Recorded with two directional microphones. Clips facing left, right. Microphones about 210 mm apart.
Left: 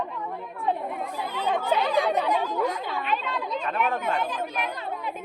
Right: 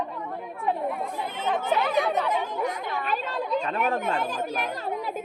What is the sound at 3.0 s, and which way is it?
Speech, 45° right (ahead or behind).